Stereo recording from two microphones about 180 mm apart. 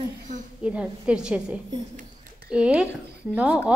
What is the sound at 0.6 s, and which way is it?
A woman's voice, 5° right (ahead or behind).